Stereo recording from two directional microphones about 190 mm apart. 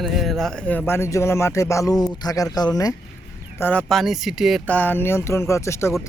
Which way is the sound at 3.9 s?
Centre (ahead or behind).